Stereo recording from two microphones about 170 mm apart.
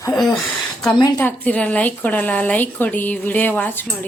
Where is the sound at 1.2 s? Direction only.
10° left (ahead or behind).